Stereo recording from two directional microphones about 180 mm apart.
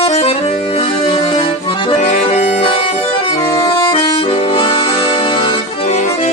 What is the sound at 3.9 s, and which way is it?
Accordion, 30° left (ahead or behind).